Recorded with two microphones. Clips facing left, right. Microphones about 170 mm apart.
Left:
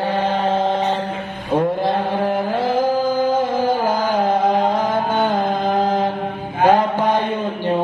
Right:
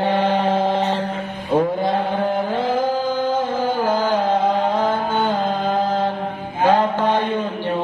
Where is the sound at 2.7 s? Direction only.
10° left (ahead or behind).